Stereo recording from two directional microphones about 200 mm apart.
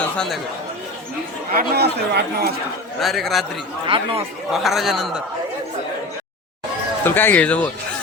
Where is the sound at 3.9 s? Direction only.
25° right (ahead or behind).